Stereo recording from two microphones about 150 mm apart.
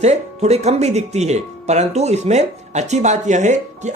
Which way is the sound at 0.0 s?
45° right (ahead or behind).